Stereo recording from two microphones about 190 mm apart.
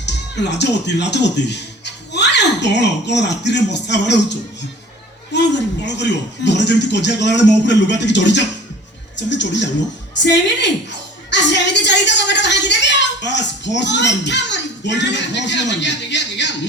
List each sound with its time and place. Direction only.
0.0 s a woman's voice: 65° left (ahead or behind)